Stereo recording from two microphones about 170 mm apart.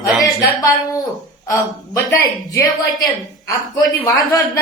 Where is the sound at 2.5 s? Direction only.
20° left (ahead or behind).